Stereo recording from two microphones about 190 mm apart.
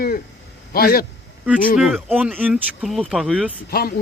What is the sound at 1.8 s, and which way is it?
Speech, centre (ahead or behind).